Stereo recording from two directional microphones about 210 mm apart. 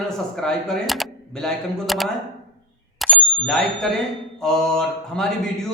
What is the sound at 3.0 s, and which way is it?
Bicycle bell, centre (ahead or behind).